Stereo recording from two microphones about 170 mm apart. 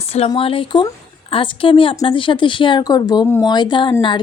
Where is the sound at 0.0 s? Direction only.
35° left (ahead or behind).